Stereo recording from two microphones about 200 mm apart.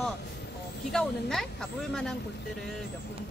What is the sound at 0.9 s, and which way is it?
Speech, centre (ahead or behind).